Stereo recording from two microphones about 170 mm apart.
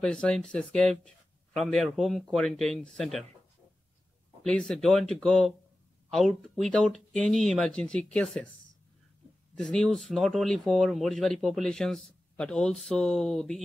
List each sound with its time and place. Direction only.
0.0 s speech: 5° left (ahead or behind)
4.4 s speech: 5° left (ahead or behind)
9.6 s speech: 5° left (ahead or behind)